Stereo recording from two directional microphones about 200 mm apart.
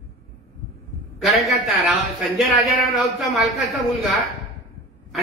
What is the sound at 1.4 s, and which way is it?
A man's voice, centre (ahead or behind).